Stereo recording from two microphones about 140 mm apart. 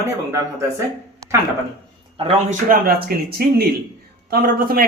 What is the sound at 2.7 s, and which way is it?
Speech, 90° right.